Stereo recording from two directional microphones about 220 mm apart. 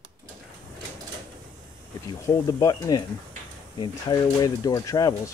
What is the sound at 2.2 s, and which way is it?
Speech, 15° left (ahead or behind).